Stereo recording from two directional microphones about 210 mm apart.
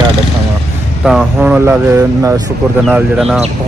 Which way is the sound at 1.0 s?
5° right (ahead or behind).